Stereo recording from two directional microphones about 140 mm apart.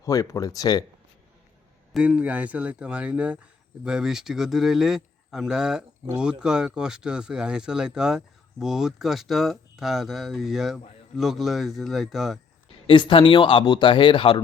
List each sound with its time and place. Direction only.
0.0 s speech: 25° left (ahead or behind)
1.9 s speech: 10° right (ahead or behind)
12.9 s speech: 35° left (ahead or behind)